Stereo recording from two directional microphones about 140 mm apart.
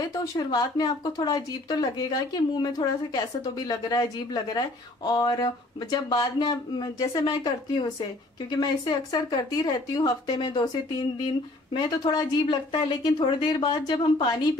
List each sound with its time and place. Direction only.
0.1 s a woman's voice: 25° left (ahead or behind)